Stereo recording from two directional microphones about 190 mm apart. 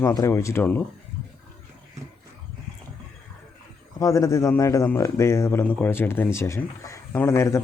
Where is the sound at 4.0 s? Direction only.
15° left (ahead or behind).